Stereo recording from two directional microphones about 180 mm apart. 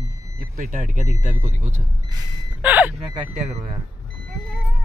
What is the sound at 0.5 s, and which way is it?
Speech, 45° right (ahead or behind).